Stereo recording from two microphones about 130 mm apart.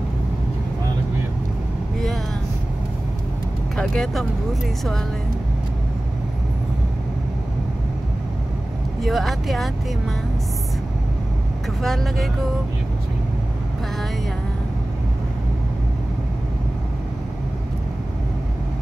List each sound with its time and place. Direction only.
3.7 s speech: 5° left (ahead or behind)
9.0 s speech: centre (ahead or behind)
11.8 s speech: centre (ahead or behind)